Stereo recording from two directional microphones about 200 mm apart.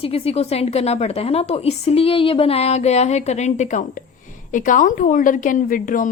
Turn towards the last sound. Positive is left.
turn(degrees=40)  # may be behind; listen again after turning